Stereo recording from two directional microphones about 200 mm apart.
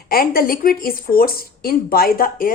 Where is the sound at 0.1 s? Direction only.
45° left (ahead or behind).